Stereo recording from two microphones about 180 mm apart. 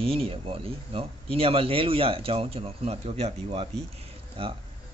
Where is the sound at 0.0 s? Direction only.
30° right (ahead or behind).